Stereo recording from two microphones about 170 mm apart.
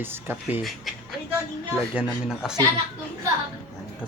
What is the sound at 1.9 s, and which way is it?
Speech, 5° right (ahead or behind).